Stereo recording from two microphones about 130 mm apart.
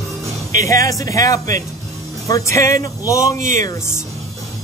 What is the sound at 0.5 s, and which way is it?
A man's voice, 25° left (ahead or behind).